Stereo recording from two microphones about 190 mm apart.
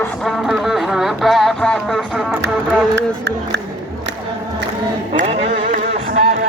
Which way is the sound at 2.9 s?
65° right (ahead or behind).